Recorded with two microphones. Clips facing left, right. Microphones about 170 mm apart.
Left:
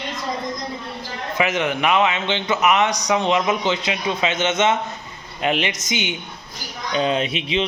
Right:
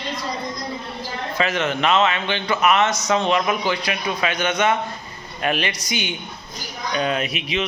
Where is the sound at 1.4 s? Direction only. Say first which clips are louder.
Left 1 dB; 15° left (ahead or behind).